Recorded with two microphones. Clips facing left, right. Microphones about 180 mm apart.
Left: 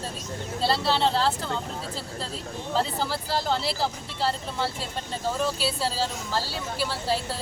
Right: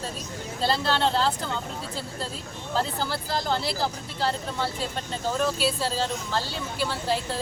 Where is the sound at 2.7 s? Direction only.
Centre (ahead or behind).